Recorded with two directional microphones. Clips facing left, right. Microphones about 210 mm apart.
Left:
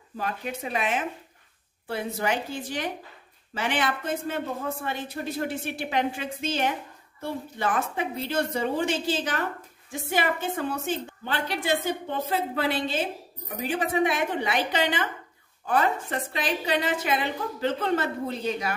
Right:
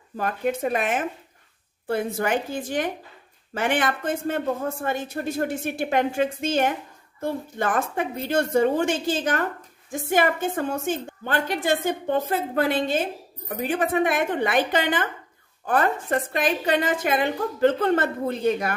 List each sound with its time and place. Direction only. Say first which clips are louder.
0.2 s a woman's voice: right 7 dB; 50° right (ahead or behind)